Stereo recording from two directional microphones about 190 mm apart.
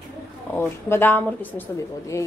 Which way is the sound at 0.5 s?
10° left (ahead or behind).